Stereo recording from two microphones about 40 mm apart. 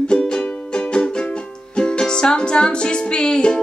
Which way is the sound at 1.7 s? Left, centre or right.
Left.